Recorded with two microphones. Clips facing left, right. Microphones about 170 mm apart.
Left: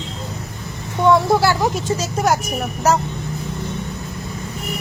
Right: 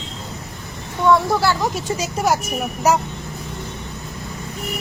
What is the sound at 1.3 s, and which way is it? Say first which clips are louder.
Speech: left 3 dB; 10° left (ahead or behind).